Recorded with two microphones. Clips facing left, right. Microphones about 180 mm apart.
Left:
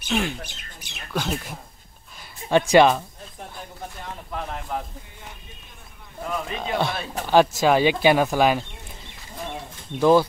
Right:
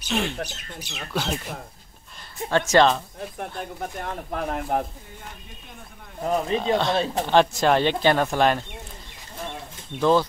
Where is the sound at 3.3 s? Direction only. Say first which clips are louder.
Right 4 dB; 65° right (ahead or behind).